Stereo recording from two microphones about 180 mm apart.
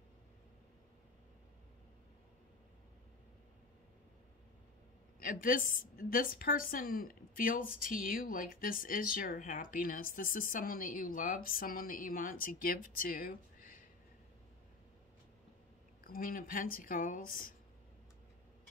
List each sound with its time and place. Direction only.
5.2 s a woman's voice: 50° left (ahead or behind)
16.0 s a woman's voice: 50° left (ahead or behind)